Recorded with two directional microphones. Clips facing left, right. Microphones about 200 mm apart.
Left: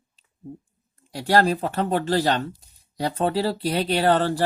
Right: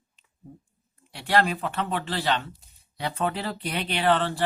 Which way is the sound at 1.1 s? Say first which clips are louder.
Left 4 dB; 40° left (ahead or behind).